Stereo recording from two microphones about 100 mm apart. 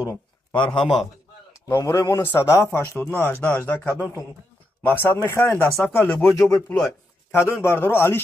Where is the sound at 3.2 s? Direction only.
20° left (ahead or behind).